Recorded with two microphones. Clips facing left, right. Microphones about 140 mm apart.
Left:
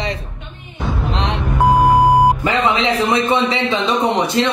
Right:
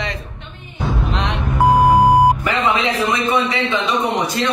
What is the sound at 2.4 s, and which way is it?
Speech, 25° left (ahead or behind).